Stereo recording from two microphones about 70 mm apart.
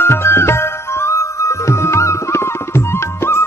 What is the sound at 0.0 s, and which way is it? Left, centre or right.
Music, left.